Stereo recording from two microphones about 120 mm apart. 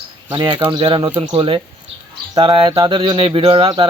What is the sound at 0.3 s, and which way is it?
Speech, 45° right (ahead or behind).